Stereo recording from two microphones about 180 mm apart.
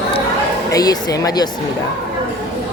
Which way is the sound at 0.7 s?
20° left (ahead or behind).